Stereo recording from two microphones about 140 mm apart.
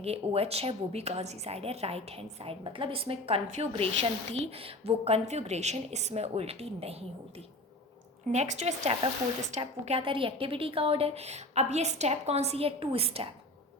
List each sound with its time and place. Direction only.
0.0 s a woman's voice: 45° right (ahead or behind)
8.3 s a woman's voice: 55° right (ahead or behind)